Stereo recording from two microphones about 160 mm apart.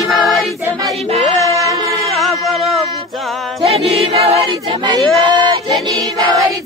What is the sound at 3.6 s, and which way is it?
Speech, 40° right (ahead or behind).